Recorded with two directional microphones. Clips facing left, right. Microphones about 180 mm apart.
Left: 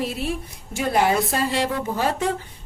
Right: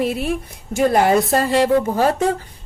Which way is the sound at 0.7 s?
45° right (ahead or behind).